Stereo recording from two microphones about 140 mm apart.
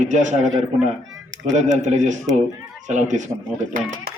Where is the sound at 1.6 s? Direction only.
60° right (ahead or behind).